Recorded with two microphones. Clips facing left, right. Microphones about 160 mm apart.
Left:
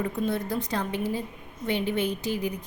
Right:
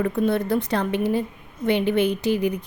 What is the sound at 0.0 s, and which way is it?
A woman's voice, 70° right (ahead or behind).